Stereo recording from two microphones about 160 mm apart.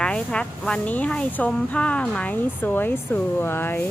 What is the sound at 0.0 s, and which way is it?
Speech, 5° left (ahead or behind).